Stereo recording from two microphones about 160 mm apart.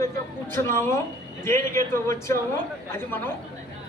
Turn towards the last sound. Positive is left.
turn(degrees=15)  # may be behind; listen again after turning